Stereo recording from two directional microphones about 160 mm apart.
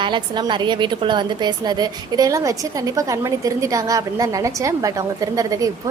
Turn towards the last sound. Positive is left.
turn(degrees=-20)  # may be behind; listen again after turning